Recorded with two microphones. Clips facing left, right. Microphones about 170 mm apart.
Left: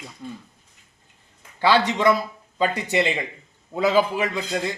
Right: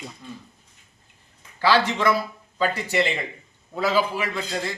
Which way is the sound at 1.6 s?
20° left (ahead or behind).